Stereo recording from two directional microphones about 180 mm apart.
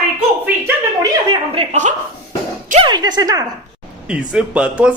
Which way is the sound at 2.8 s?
25° right (ahead or behind).